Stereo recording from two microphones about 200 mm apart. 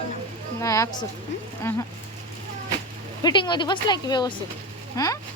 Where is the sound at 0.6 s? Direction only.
15° left (ahead or behind).